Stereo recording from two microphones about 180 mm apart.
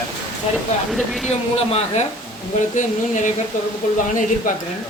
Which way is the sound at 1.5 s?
35° left (ahead or behind).